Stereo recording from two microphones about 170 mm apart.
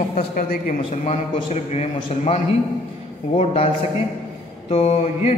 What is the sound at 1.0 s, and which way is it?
A man's voice, 40° left (ahead or behind).